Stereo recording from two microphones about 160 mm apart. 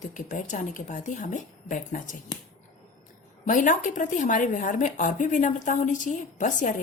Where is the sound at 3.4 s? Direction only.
55° left (ahead or behind).